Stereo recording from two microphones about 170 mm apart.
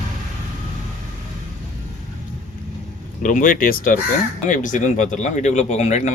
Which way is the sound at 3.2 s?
50° left (ahead or behind).